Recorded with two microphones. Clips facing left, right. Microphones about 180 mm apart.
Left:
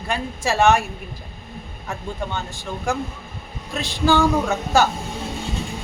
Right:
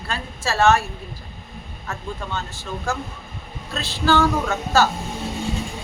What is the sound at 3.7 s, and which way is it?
A woman's voice, 15° left (ahead or behind).